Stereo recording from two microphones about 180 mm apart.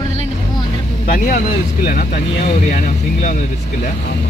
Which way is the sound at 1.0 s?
50° left (ahead or behind).